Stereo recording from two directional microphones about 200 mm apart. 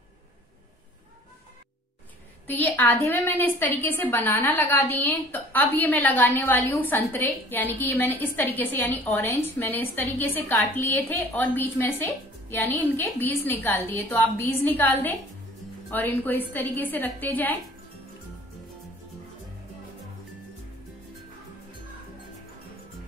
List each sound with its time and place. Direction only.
2.4 s a woman's voice: 10° left (ahead or behind)